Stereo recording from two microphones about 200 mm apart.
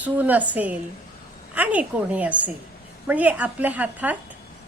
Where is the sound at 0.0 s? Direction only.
10° right (ahead or behind).